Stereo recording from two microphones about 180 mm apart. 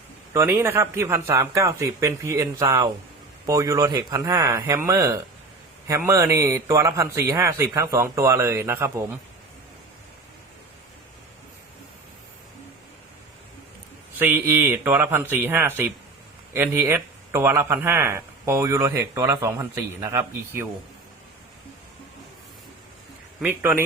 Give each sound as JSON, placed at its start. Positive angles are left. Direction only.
{"t": 0.3, "sound": "speech", "side_deg": -15}
{"t": 14.2, "sound": "speech", "side_deg": -10}
{"t": 23.4, "sound": "speech", "side_deg": -10}